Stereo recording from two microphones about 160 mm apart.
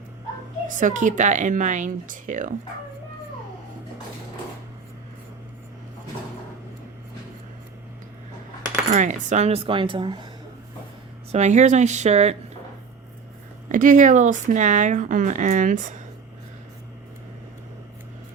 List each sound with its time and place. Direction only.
0.7 s speech: 55° right (ahead or behind)
8.9 s speech: 45° right (ahead or behind); by 10.2 s 30° right (ahead or behind)
11.3 s speech: 45° right (ahead or behind)
13.7 s speech: 55° right (ahead or behind)